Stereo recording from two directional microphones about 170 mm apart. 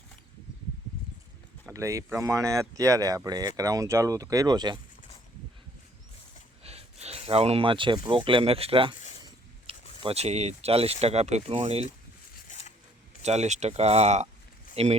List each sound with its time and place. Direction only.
1.7 s speech: 20° right (ahead or behind)
6.6 s speech: 35° right (ahead or behind)
10.0 s speech: 35° right (ahead or behind)
12.5 s zipper: 45° left (ahead or behind)
13.2 s speech: 40° right (ahead or behind)